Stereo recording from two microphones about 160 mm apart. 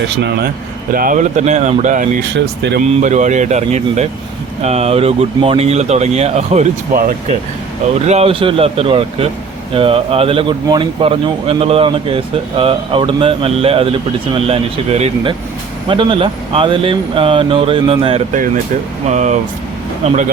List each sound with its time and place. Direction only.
0.2 s speech: 90° right
0.9 s speech: 55° right (ahead or behind)
2.3 s speech: 90° right
2.8 s speech: 45° right (ahead or behind)
6.9 s speech: 60° right (ahead or behind)
8.0 s speech: 40° right (ahead or behind)
19.0 s speech: 45° right (ahead or behind)